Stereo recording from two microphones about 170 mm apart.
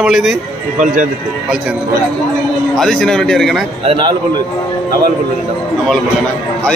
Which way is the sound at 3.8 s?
30° right (ahead or behind).